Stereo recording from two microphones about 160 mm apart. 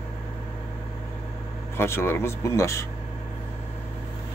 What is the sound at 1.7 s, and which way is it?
Speech, 15° left (ahead or behind).